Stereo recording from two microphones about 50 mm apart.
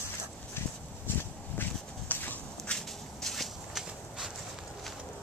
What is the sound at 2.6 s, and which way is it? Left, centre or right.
Walk, centre.